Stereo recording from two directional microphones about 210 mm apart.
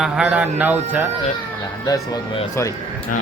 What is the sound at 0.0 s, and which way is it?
A woman's voice, 5° right (ahead or behind).